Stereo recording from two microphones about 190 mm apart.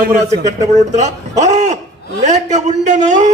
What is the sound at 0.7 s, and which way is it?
A man's voice, 40° right (ahead or behind).